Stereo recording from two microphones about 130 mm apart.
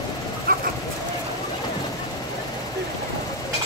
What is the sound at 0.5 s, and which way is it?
Dog, 90° right.